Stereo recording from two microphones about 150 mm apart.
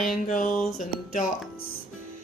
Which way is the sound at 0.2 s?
60° left (ahead or behind).